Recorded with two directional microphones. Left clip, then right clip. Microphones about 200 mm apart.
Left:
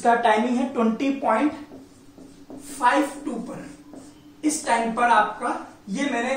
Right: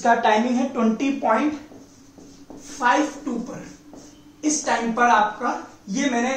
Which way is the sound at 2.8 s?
10° right (ahead or behind).